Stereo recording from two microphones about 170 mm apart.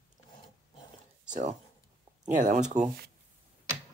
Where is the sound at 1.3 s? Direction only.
45° right (ahead or behind).